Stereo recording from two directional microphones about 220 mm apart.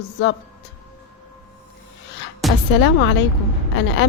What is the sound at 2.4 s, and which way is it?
Music, centre (ahead or behind).